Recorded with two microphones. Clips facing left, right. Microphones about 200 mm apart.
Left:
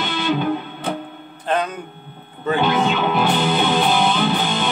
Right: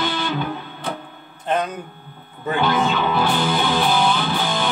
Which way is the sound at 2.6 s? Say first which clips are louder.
Even; 20° left (ahead or behind).